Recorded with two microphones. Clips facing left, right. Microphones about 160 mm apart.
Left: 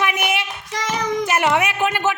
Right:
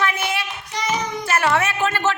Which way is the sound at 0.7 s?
90° left.